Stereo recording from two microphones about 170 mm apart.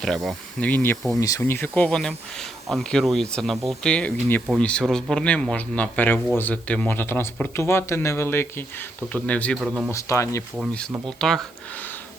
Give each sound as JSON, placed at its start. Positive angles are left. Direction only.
{"t": 0.0, "sound": "speech", "side_deg": 0}
{"t": 9.9, "sound": "speech", "side_deg": 15}
{"t": 11.2, "sound": "speech", "side_deg": 0}